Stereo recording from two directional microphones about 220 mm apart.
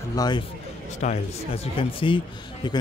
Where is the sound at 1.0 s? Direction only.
30° left (ahead or behind).